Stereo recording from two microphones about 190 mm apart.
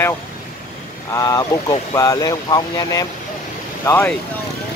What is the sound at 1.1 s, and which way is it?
Speech, 20° left (ahead or behind).